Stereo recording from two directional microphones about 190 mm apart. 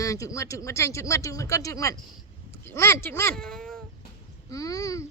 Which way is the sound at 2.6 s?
15° left (ahead or behind).